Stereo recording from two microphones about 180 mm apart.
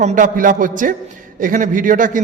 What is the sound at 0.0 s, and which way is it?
A man's voice, 45° right (ahead or behind).